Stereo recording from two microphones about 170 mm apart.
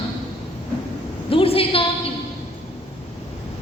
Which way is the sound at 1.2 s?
35° left (ahead or behind).